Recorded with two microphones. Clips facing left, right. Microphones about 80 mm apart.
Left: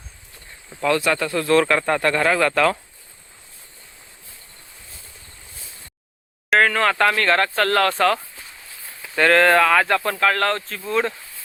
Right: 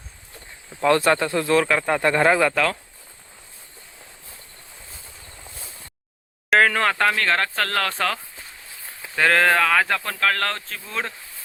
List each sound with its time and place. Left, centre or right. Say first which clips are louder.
0.8 s speech: right 2 dB; right
1.5 s speech: left 3 dB; centre
2.0 s speech: right 1 dB; centre
2.4 s speech: left 2 dB; centre
6.5 s speech: left 1 dB; centre